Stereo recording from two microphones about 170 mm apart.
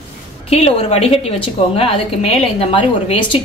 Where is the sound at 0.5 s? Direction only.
35° left (ahead or behind).